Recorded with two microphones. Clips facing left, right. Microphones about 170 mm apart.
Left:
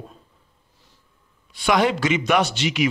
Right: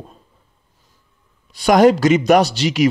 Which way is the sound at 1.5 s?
40° right (ahead or behind).